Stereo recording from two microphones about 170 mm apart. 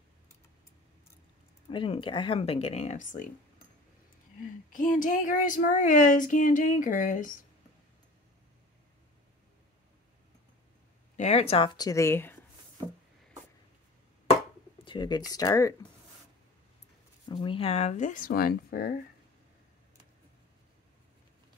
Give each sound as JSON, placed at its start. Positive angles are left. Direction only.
{"t": 1.7, "sound": "speech", "side_deg": 30}
{"t": 4.7, "sound": "speech", "side_deg": 50}
{"t": 11.1, "sound": "speech", "side_deg": 40}
{"t": 14.9, "sound": "speech", "side_deg": 25}
{"t": 17.3, "sound": "speech", "side_deg": 30}